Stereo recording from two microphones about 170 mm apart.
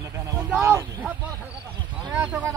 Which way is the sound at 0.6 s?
15° right (ahead or behind).